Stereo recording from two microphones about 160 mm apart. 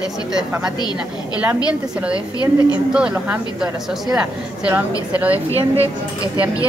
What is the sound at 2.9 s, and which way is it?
Speech, 5° right (ahead or behind).